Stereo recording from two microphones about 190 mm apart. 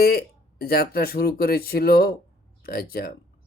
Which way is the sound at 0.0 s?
55° left (ahead or behind).